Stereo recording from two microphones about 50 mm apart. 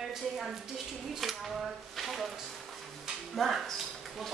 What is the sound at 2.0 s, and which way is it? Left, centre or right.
Speech, centre.